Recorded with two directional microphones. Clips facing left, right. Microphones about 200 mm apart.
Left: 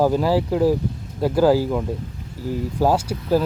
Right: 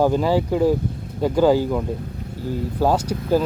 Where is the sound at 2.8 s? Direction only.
10° left (ahead or behind).